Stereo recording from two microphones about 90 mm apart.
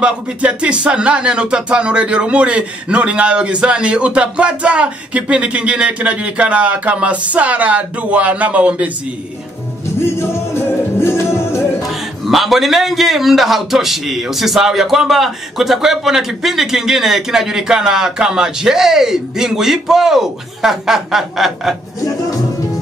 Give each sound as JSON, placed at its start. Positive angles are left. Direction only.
{"t": 0.0, "sound": "speech", "side_deg": -10}
{"t": 9.9, "sound": "music", "side_deg": 30}
{"t": 11.8, "sound": "a man's voice", "side_deg": 0}